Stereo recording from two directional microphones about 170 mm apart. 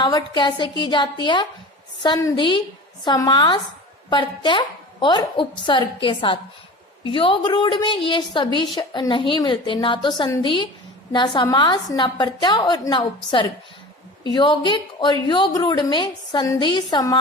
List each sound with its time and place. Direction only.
0.0 s a woman's voice: 25° left (ahead or behind)